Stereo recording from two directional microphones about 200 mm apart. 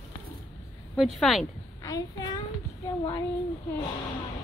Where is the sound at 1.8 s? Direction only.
20° left (ahead or behind).